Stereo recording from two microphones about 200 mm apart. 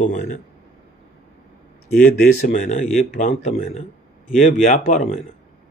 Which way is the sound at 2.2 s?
40° left (ahead or behind).